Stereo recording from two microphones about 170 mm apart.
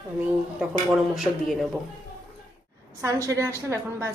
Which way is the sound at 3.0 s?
20° right (ahead or behind).